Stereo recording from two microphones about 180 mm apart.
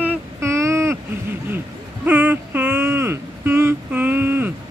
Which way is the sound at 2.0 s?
10° right (ahead or behind).